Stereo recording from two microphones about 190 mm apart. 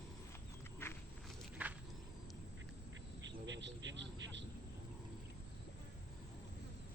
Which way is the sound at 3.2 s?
70° right (ahead or behind).